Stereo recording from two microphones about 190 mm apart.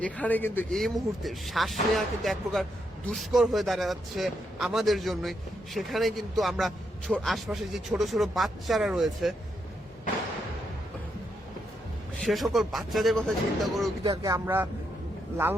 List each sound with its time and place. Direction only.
0.0 s a man's voice: 10° left (ahead or behind)
12.2 s a man's voice: centre (ahead or behind)
14.0 s speech: 20° right (ahead or behind)